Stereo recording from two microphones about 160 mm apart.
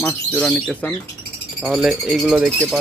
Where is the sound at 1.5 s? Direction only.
5° right (ahead or behind).